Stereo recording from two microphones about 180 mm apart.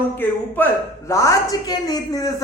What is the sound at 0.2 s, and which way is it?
A woman's voice, 10° left (ahead or behind).